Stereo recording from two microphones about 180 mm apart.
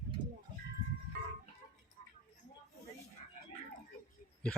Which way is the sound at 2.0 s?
50° left (ahead or behind).